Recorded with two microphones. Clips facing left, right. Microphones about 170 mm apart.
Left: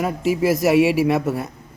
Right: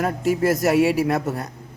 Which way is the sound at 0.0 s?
Centre (ahead or behind).